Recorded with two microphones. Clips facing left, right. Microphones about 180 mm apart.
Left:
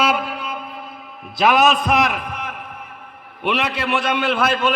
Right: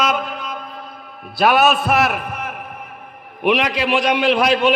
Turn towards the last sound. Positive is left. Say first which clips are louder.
# right 4 dB
turn(degrees=-15)  # may be behind; listen again after turning